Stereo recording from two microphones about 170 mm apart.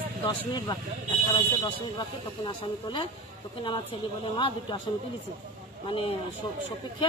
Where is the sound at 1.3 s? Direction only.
25° left (ahead or behind).